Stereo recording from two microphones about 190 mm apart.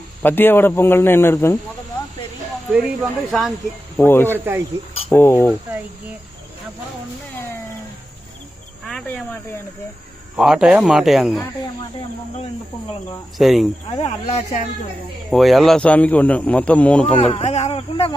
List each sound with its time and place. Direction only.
0.2 s speech: 10° left (ahead or behind)
2.7 s speech: 5° right (ahead or behind)
3.9 s speech: 10° left (ahead or behind)
4.3 s speech: 10° right (ahead or behind)
5.0 s speech: 10° left (ahead or behind)
8.8 s speech: centre (ahead or behind)
10.3 s speech: 5° right (ahead or behind)
13.4 s speech: centre (ahead or behind)
13.9 s speech: 35° left (ahead or behind)
15.3 s speech: centre (ahead or behind)
17.2 s speech: 30° left (ahead or behind)